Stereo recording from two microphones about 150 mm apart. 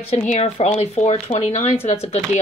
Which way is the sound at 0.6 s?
40° left (ahead or behind).